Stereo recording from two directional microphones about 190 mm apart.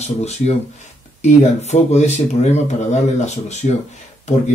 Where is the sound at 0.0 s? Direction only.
35° left (ahead or behind).